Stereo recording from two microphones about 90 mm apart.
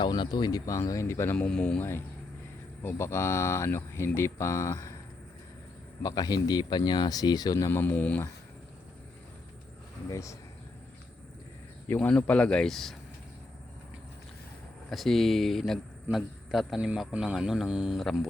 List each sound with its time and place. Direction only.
0.0 s speech: 55° left (ahead or behind); by 1.4 s 30° left (ahead or behind)
1.4 s speech: 10° left (ahead or behind)
1.8 s speech: 25° left (ahead or behind)
6.0 s speech: 45° left (ahead or behind)
7.7 s speech: 20° left (ahead or behind)
10.1 s speech: 35° left (ahead or behind)
11.9 s speech: 10° left (ahead or behind)
14.8 s a man's voice: centre (ahead or behind)